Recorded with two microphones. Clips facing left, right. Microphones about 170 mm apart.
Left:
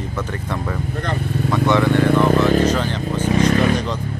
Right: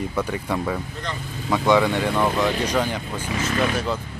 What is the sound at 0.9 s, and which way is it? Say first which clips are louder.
Speech: left 8 dB; 60° left (ahead or behind).